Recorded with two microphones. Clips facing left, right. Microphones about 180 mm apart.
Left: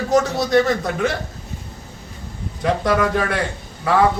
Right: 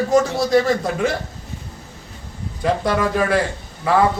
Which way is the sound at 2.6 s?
Centre (ahead or behind).